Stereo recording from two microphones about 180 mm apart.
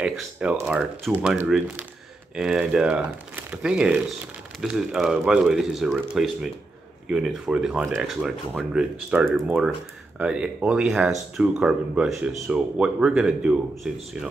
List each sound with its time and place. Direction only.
0.0 s speech: 5° right (ahead or behind)